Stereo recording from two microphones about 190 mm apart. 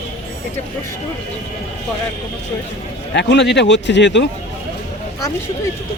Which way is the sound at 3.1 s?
65° left (ahead or behind).